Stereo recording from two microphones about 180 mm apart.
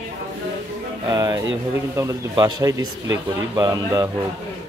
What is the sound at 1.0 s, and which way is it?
Speech, 20° right (ahead or behind).